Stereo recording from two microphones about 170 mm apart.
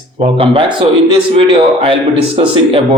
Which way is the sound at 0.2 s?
35° right (ahead or behind).